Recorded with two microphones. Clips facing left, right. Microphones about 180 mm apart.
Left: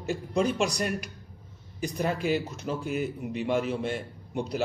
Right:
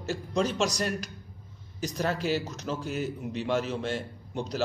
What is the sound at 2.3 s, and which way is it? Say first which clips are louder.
A man's voice: left 1 dB; centre (ahead or behind).